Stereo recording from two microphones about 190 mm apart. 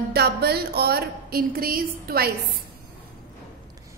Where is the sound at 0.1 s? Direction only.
55° right (ahead or behind).